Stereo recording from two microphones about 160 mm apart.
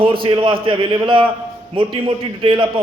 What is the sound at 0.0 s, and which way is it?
A man's voice, 35° right (ahead or behind).